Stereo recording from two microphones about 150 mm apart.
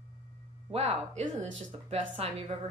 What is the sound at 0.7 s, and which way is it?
Speech, 40° right (ahead or behind).